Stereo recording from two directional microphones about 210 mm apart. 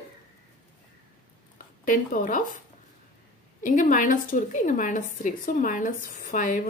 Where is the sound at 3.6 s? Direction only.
40° left (ahead or behind).